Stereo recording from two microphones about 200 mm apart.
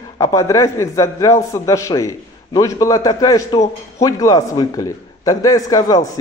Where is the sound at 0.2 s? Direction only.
15° left (ahead or behind).